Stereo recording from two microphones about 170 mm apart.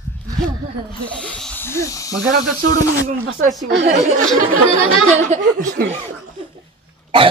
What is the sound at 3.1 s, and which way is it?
Speech, 55° right (ahead or behind).